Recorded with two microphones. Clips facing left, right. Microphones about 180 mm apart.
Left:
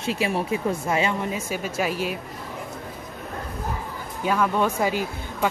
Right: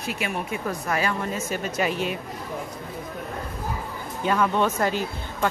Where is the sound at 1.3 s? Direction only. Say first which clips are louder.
Even; 5° left (ahead or behind).